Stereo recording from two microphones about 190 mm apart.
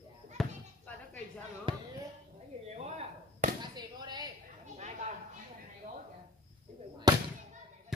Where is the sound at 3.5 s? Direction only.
20° right (ahead or behind).